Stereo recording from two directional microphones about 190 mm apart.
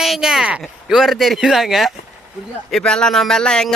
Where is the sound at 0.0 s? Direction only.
Centre (ahead or behind).